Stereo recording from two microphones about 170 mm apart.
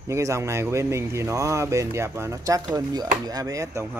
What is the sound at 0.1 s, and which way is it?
Speech, 15° right (ahead or behind).